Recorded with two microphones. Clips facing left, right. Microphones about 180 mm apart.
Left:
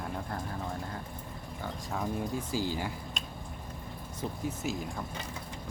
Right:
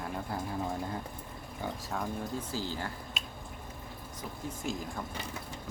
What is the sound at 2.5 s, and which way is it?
Speech, 10° left (ahead or behind).